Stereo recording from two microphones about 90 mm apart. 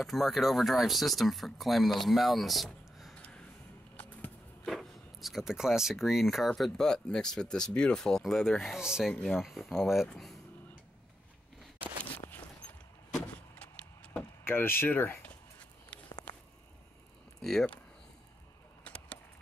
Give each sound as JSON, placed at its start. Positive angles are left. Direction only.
{"t": 0.0, "sound": "speech", "side_deg": 0}
{"t": 3.2, "sound": "a sound", "side_deg": 10}
{"t": 4.6, "sound": "speech", "side_deg": 0}
{"t": 9.1, "sound": "speech", "side_deg": 15}
{"t": 9.4, "sound": "speech", "side_deg": 0}
{"t": 12.3, "sound": "a sound", "side_deg": 20}
{"t": 14.4, "sound": "speech", "side_deg": 25}
{"t": 15.9, "sound": "walk", "side_deg": 15}
{"t": 17.4, "sound": "speech", "side_deg": 5}
{"t": 18.9, "sound": "a sound", "side_deg": 15}